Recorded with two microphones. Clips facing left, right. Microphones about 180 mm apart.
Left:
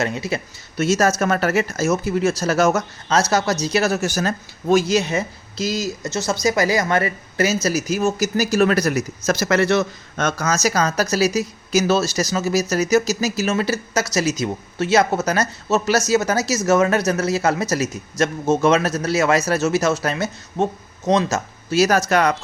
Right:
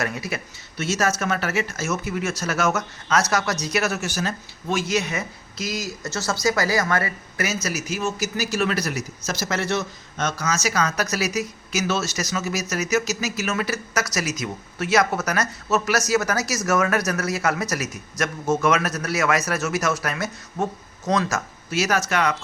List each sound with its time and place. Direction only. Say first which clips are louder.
0.0 s speech: left 5 dB; 25° left (ahead or behind)
0.8 s speech: left 6 dB; 40° left (ahead or behind); by 9.8 s 75° left (ahead or behind)
10.2 s speech: left 4 dB; 50° left (ahead or behind)